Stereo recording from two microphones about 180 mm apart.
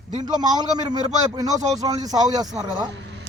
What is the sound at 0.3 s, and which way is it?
Speech, 20° right (ahead or behind).